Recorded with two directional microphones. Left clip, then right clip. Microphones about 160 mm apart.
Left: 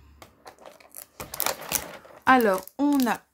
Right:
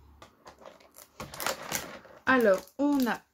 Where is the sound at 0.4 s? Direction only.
20° left (ahead or behind).